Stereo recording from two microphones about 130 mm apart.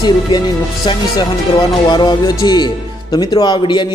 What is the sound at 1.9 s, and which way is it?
Speech, 35° left (ahead or behind).